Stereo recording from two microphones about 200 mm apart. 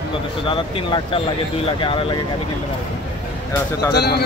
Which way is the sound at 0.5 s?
25° left (ahead or behind).